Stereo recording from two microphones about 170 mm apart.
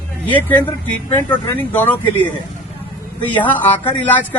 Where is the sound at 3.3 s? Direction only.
10° left (ahead or behind).